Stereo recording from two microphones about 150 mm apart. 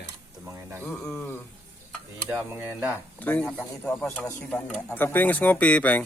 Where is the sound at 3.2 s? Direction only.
10° left (ahead or behind).